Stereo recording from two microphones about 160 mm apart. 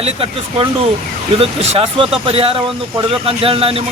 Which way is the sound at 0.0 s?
35° right (ahead or behind).